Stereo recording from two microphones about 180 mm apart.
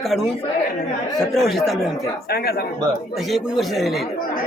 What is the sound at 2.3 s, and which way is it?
Speech, 60° left (ahead or behind).